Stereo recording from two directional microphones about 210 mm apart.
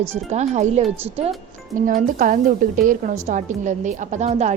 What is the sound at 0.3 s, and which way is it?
A woman's voice, 35° right (ahead or behind).